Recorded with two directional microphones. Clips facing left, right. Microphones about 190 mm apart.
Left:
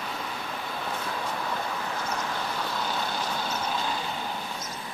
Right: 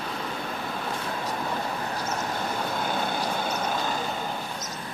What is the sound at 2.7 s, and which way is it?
Vehicle, 50° right (ahead or behind).